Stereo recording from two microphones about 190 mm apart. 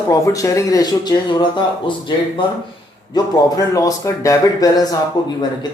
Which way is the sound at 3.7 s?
15° left (ahead or behind).